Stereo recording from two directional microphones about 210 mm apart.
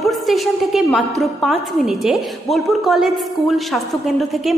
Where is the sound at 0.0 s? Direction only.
Centre (ahead or behind).